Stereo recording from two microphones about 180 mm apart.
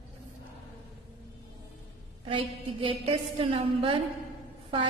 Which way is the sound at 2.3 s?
30° right (ahead or behind).